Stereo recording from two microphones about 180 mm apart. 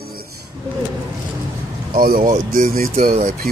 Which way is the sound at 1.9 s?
55° right (ahead or behind).